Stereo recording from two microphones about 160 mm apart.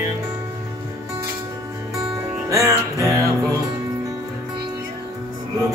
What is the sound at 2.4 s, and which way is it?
Music, 20° right (ahead or behind).